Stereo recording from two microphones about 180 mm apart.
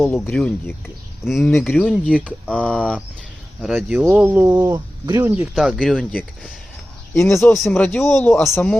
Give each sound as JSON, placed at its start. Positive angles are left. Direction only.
{"t": 0.0, "sound": "speech", "side_deg": 10}
{"t": 1.5, "sound": "speech", "side_deg": 10}
{"t": 1.8, "sound": "speech", "side_deg": 0}
{"t": 5.5, "sound": "speech", "side_deg": 0}